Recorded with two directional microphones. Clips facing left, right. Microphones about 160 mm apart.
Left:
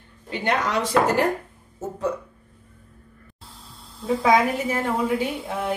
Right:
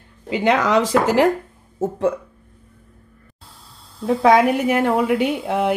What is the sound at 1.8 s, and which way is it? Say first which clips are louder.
Speech: right 7 dB; 55° right (ahead or behind).